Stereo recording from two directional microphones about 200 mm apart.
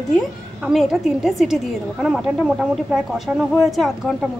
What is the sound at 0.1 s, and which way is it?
A woman's voice, centre (ahead or behind).